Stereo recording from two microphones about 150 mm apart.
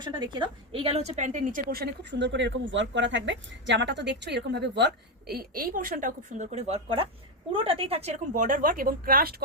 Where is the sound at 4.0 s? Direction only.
90° right.